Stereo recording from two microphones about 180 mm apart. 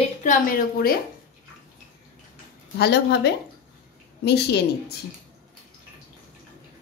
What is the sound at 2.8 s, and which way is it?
A woman's voice, 65° left (ahead or behind).